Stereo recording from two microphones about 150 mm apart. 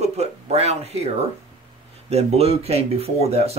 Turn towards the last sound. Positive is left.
turn(degrees=-45)  # may be behind; listen again after turning